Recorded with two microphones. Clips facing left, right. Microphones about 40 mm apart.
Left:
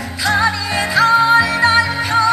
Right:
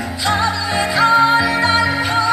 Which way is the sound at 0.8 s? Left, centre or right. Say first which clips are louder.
Left 1 dB; centre.